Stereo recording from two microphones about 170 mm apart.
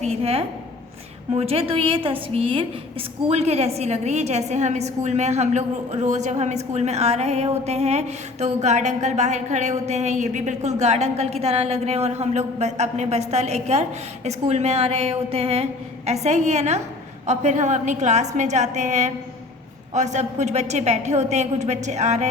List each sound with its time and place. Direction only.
0.0 s a woman's voice: 35° right (ahead or behind)